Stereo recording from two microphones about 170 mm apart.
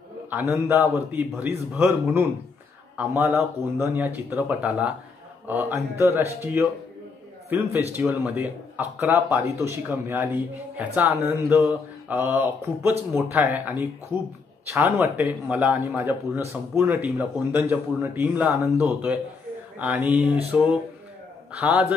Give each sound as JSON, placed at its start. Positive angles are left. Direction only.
{"t": 0.3, "sound": "a man's voice", "side_deg": -10}